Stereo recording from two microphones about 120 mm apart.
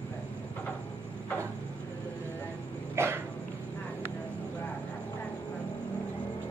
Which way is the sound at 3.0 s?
20° right (ahead or behind).